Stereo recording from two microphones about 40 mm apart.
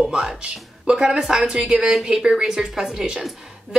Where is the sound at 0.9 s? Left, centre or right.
Right.